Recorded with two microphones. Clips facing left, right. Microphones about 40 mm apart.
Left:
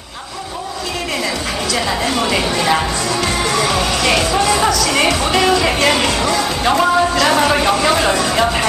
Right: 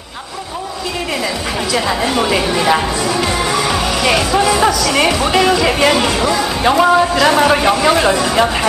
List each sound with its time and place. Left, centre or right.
1.7 s speech: centre